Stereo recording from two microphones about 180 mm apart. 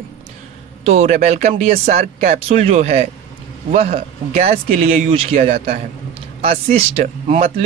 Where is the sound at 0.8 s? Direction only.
35° right (ahead or behind).